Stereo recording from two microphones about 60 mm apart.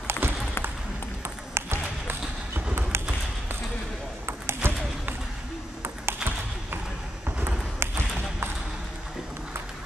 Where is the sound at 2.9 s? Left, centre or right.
Right.